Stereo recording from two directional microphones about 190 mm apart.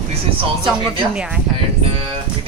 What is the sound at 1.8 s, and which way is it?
Speech, 30° right (ahead or behind).